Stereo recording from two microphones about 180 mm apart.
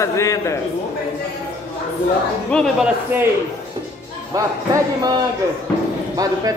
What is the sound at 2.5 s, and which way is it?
Speech, 5° left (ahead or behind).